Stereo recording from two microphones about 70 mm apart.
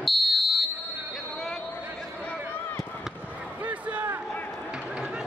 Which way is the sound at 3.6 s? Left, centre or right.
Right.